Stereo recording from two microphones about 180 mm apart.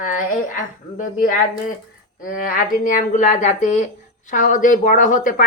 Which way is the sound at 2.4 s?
50° left (ahead or behind).